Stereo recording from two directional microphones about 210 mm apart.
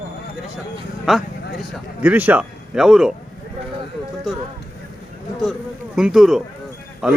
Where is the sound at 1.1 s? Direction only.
Centre (ahead or behind).